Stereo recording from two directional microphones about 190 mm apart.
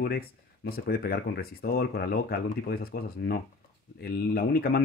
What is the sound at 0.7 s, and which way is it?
Speech, 55° left (ahead or behind).